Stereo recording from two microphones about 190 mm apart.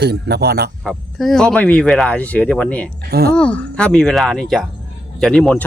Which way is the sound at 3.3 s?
5° left (ahead or behind).